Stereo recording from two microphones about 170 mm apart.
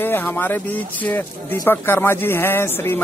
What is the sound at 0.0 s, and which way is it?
Speech, 10° left (ahead or behind).